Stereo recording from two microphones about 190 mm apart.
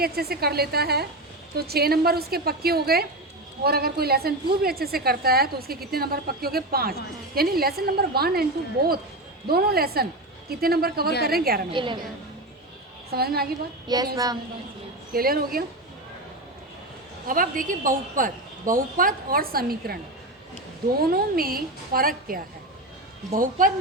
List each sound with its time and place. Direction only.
0.0 s a woman's voice: 55° right (ahead or behind)
9.5 s a woman's voice: 55° right (ahead or behind)
11.7 s speech: 25° right (ahead or behind)
13.1 s a woman's voice: 55° right (ahead or behind)
13.8 s speech: 20° right (ahead or behind)
15.1 s a woman's voice: 50° right (ahead or behind)
17.2 s a woman's voice: 45° right (ahead or behind)
21.0 s a woman's voice: 50° right (ahead or behind)